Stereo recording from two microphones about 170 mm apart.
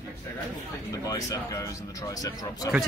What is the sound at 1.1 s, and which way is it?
Speech, 20° left (ahead or behind).